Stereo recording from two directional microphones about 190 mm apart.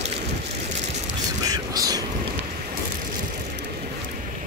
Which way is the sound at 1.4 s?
20° right (ahead or behind).